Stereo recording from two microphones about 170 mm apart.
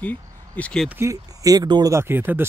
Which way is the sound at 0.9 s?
15° right (ahead or behind).